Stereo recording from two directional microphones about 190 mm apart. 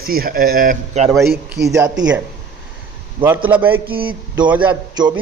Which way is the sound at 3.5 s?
10° right (ahead or behind).